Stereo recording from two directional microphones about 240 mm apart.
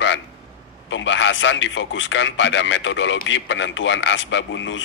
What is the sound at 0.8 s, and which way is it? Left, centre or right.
A man's voice, left.